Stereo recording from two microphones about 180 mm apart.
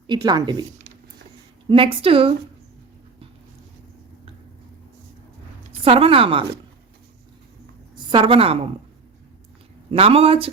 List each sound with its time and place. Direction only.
0.1 s speech: 25° right (ahead or behind)
1.7 s a woman's voice: 30° right (ahead or behind)
5.8 s a woman's voice: 30° right (ahead or behind)
8.1 s a woman's voice: 30° right (ahead or behind)
9.9 s a woman's voice: 35° right (ahead or behind)